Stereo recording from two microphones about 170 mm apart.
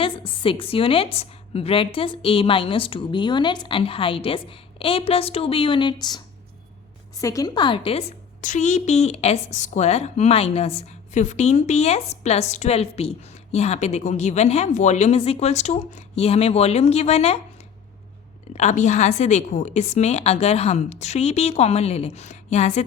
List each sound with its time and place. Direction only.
0.0 s a woman's voice: 30° left (ahead or behind)
8.4 s speech: 50° left (ahead or behind)
18.5 s speech: 45° left (ahead or behind)